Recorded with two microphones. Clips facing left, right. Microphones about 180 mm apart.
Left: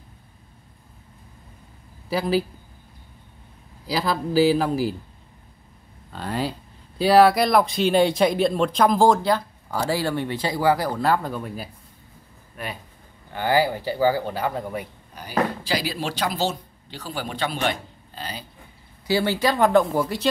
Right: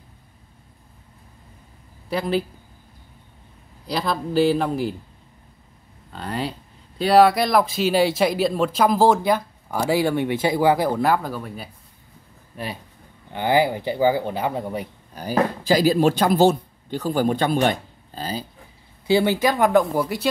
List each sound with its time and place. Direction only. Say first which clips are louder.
2.0 s speech: left 1 dB; 5° left (ahead or behind)
3.8 s speech: even; 5° left (ahead or behind)
6.1 s speech: left 1 dB; centre (ahead or behind)
11.4 s speech: left 2 dB; centre (ahead or behind)
13.3 s speech: right 2 dB; 20° right (ahead or behind)
15.1 s speech: right 3 dB; 45° right (ahead or behind)
19.0 s speech: right 3 dB; 20° right (ahead or behind)